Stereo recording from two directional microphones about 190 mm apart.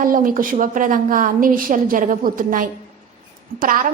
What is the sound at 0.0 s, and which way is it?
A woman's voice, 45° right (ahead or behind).